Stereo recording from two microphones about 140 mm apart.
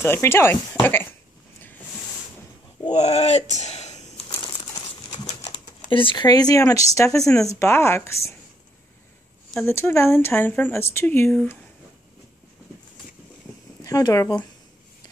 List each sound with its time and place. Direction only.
0.0 s speech: 15° left (ahead or behind)
2.9 s speech: 50° left (ahead or behind)
5.7 s speech: 35° left (ahead or behind)
9.7 s speech: 15° left (ahead or behind)
13.8 s speech: 25° left (ahead or behind)